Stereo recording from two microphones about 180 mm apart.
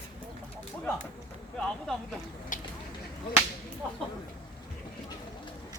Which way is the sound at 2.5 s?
45° left (ahead or behind).